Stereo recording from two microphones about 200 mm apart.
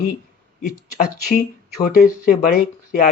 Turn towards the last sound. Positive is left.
turn(degrees=45)  # may be behind; listen again after turning